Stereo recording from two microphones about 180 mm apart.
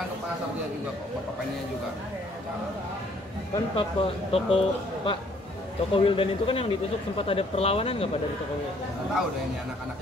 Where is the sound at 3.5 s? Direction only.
30° left (ahead or behind).